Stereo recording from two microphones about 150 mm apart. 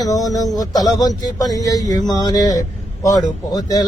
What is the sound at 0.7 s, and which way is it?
A man's voice, 25° left (ahead or behind).